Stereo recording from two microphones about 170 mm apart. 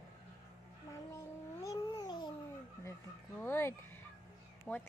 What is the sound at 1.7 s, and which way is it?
Cat, 25° left (ahead or behind).